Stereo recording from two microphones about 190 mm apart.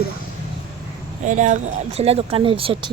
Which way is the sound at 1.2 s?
40° right (ahead or behind).